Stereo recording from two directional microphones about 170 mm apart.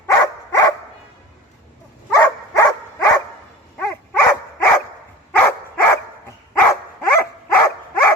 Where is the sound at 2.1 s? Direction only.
15° left (ahead or behind).